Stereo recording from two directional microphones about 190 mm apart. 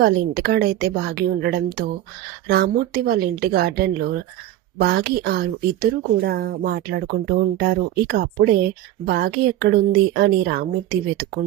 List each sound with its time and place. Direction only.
0.0 s speech: 55° right (ahead or behind)